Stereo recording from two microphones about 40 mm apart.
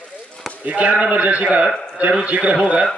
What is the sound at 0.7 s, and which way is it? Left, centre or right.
A man's voice, right.